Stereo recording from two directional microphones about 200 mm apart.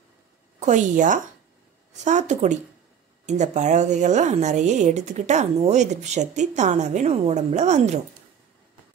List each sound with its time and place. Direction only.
0.6 s speech: 40° right (ahead or behind)